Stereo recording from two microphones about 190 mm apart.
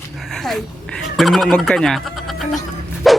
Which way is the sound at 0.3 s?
Centre (ahead or behind).